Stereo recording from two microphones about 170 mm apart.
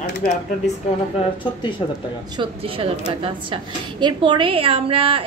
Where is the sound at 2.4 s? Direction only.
35° right (ahead or behind).